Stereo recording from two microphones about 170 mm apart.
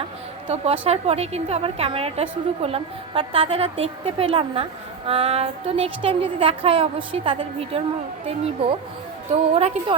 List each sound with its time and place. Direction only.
0.4 s a woman's voice: 35° right (ahead or behind)